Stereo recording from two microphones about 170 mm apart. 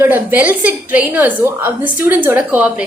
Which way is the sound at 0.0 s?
10° right (ahead or behind).